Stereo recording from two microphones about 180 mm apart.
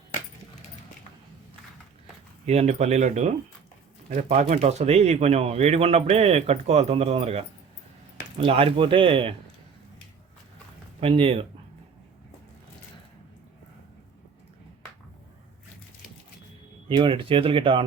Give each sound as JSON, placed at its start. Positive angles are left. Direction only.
{"t": 2.5, "sound": "speech", "side_deg": -35}
{"t": 11.0, "sound": "speech", "side_deg": -30}
{"t": 16.9, "sound": "speech", "side_deg": -30}